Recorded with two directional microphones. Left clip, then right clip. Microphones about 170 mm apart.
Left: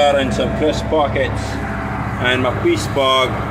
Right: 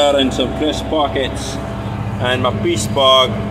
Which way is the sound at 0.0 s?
25° right (ahead or behind).